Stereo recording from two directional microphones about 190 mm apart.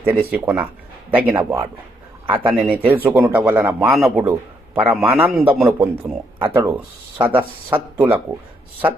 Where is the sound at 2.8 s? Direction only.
10° right (ahead or behind).